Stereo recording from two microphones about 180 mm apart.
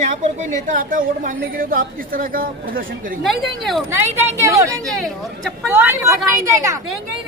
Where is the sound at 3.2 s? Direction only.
Centre (ahead or behind).